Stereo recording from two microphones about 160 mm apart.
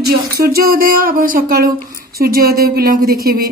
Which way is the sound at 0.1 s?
70° right (ahead or behind).